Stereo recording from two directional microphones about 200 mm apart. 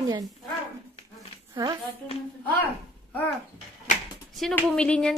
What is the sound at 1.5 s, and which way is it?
Speech, 20° right (ahead or behind).